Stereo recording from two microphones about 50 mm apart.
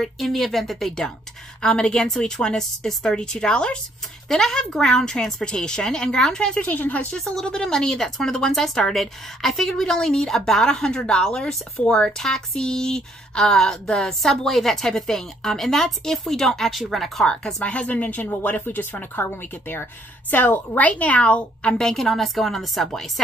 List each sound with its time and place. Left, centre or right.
0.0 s speech: centre
6.6 s speech: left
7.1 s speech: centre
17.3 s speech: centre
17.6 s a woman's voice: left; by 23.2 s centre